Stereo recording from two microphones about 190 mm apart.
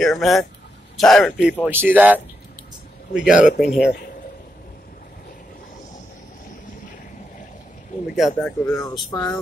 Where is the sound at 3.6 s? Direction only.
Centre (ahead or behind).